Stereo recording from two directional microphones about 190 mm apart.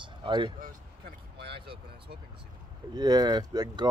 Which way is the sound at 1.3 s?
60° right (ahead or behind).